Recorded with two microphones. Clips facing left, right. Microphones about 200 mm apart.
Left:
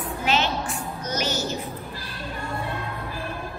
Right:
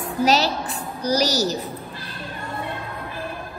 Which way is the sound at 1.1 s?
35° right (ahead or behind).